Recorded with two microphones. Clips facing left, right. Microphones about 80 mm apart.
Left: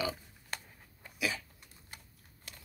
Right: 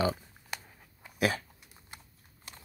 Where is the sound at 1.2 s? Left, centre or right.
Right.